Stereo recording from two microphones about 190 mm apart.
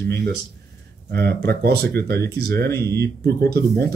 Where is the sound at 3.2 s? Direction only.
55° right (ahead or behind).